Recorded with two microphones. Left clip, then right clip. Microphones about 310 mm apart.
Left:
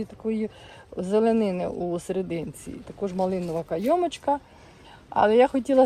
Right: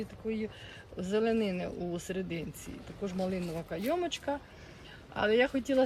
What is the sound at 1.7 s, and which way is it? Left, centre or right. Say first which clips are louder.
Speech: left 9 dB; left.